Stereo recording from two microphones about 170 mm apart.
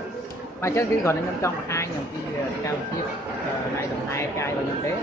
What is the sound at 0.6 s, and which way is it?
A woman's voice, 15° left (ahead or behind).